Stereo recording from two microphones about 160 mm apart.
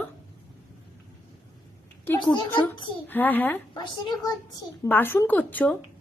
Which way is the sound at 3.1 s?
10° left (ahead or behind).